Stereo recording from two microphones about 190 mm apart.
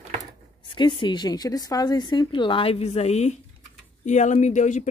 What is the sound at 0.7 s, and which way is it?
A woman's voice, 25° left (ahead or behind).